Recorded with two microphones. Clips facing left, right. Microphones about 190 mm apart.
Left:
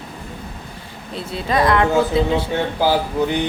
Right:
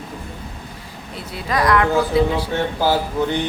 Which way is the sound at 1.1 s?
25° left (ahead or behind).